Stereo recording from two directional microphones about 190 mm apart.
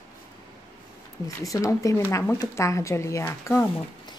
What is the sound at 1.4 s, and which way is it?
Speech, 15° left (ahead or behind).